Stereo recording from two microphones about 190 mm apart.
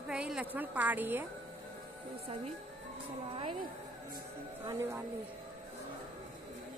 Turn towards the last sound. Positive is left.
turn(degrees=-15)  # may be behind; listen again after turning